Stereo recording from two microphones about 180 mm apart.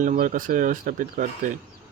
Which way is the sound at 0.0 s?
45° right (ahead or behind).